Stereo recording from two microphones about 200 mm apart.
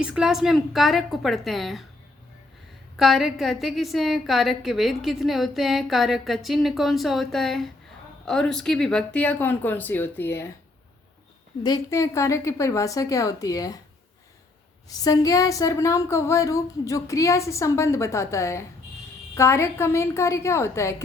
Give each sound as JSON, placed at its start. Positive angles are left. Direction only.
{"t": 0.0, "sound": "a woman's voice", "side_deg": -5}
{"t": 3.0, "sound": "a woman's voice", "side_deg": 0}
{"t": 11.6, "sound": "speech", "side_deg": 15}
{"t": 14.8, "sound": "speech", "side_deg": 15}